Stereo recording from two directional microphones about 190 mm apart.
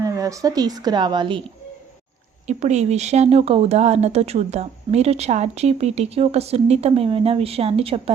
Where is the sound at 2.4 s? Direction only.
35° right (ahead or behind).